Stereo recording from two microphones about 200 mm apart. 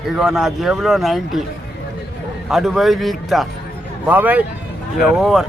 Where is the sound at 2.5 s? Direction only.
Centre (ahead or behind).